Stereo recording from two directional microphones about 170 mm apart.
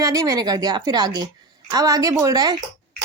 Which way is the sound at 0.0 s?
20° right (ahead or behind).